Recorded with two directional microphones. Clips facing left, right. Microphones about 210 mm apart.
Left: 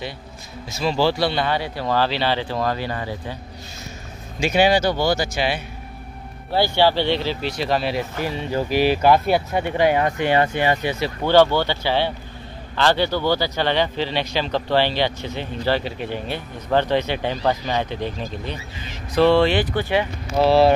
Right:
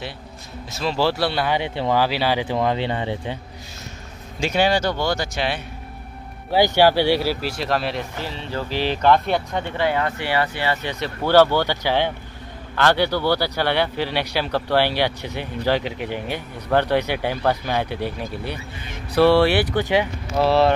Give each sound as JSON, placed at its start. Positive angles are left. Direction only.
{"t": 0.7, "sound": "speech", "side_deg": 0}
{"t": 1.5, "sound": "speech", "side_deg": -20}
{"t": 4.4, "sound": "speech", "side_deg": 10}
{"t": 6.5, "sound": "speech", "side_deg": -15}
{"t": 8.2, "sound": "speech", "side_deg": 15}
{"t": 11.6, "sound": "speech", "side_deg": -15}
{"t": 13.1, "sound": "speech", "side_deg": 15}
{"t": 13.4, "sound": "speech", "side_deg": -10}
{"t": 20.3, "sound": "speech", "side_deg": 0}